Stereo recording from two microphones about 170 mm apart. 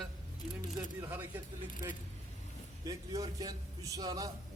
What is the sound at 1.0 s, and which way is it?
Speech, 10° right (ahead or behind).